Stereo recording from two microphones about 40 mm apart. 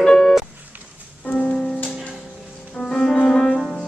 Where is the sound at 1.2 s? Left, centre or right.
Left.